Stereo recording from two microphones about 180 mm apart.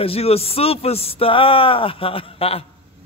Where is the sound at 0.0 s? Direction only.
35° left (ahead or behind).